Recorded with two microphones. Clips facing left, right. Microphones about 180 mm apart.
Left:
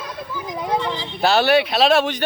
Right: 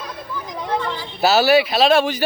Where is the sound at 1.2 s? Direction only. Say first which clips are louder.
Right 2 dB; 5° right (ahead or behind).